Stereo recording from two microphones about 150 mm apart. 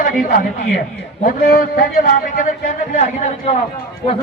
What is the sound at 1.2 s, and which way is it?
Speech, 75° left (ahead or behind).